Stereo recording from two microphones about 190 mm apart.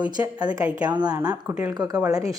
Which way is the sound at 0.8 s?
20° right (ahead or behind).